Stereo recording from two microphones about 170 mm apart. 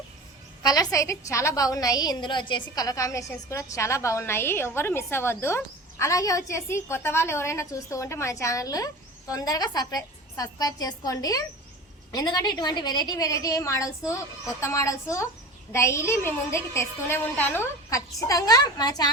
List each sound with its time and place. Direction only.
0.6 s a woman's voice: 20° left (ahead or behind)